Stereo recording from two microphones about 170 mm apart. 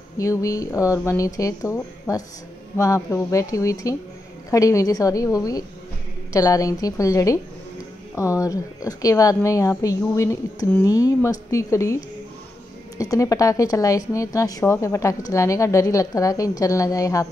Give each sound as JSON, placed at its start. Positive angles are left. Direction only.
{"t": 0.2, "sound": "speech", "side_deg": 20}